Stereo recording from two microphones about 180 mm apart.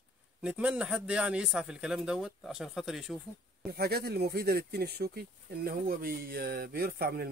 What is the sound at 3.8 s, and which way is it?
Speech, 60° right (ahead or behind).